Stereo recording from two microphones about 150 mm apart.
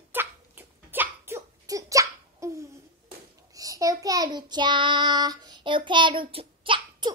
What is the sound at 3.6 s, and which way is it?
Child singing, 25° right (ahead or behind).